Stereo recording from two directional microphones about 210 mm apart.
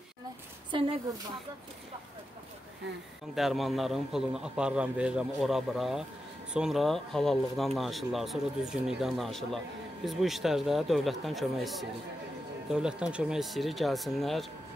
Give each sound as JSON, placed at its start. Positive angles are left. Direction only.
{"t": 0.7, "sound": "a woman's voice", "side_deg": -20}
{"t": 3.3, "sound": "speech", "side_deg": 0}